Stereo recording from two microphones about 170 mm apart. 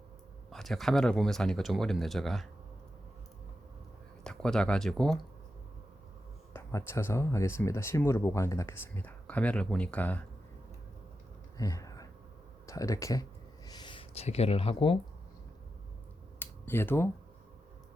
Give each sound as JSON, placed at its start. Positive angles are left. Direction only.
{"t": 0.5, "sound": "speech", "side_deg": 0}
{"t": 4.2, "sound": "speech", "side_deg": 5}
{"t": 6.5, "sound": "speech", "side_deg": 15}
{"t": 11.5, "sound": "a sound", "side_deg": 20}
{"t": 12.6, "sound": "speech", "side_deg": 20}
{"t": 16.4, "sound": "finger snapping", "side_deg": 10}